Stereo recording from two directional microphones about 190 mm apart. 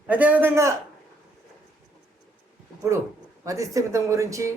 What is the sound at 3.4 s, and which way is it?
Speech, 15° right (ahead or behind).